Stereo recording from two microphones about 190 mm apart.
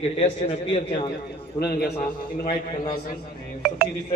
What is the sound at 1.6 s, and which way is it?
Speech, 55° left (ahead or behind).